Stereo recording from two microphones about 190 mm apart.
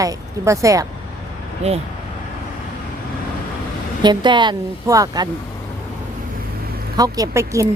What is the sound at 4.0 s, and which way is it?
Speech, 25° right (ahead or behind).